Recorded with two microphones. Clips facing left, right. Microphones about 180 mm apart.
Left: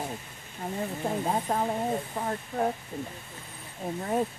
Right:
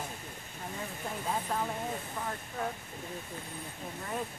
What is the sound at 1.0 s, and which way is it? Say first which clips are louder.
Speech: left 6 dB; 45° left (ahead or behind).